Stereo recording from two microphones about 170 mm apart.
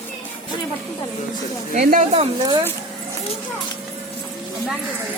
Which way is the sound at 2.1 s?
30° right (ahead or behind).